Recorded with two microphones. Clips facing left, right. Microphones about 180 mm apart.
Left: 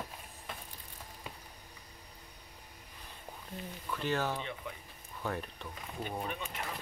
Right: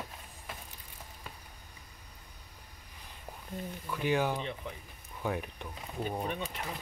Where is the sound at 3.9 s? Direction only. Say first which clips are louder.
Right 3 dB; 10° right (ahead or behind).